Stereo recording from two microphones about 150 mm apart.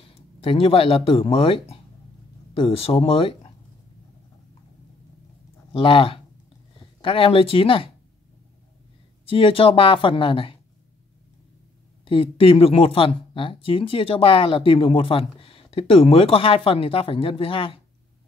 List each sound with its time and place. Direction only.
0.4 s speech: 40° left (ahead or behind)
5.7 s speech: 35° left (ahead or behind)
9.2 s speech: 35° left (ahead or behind)
12.0 s speech: 35° left (ahead or behind)